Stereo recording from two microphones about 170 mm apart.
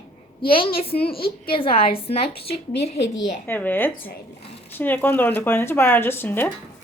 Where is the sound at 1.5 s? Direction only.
35° left (ahead or behind).